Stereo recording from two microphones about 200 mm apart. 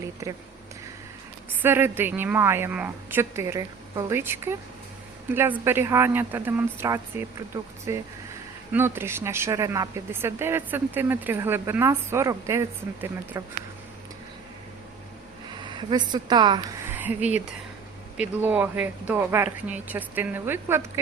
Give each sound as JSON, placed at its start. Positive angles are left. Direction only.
{"t": 0.0, "sound": "speech", "side_deg": -15}
{"t": 1.6, "sound": "a woman's voice", "side_deg": -10}
{"t": 15.4, "sound": "speech", "side_deg": -20}
{"t": 16.9, "sound": "a woman's voice", "side_deg": -10}